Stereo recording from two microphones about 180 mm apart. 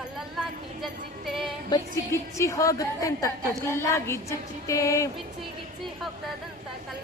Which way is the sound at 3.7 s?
15° left (ahead or behind).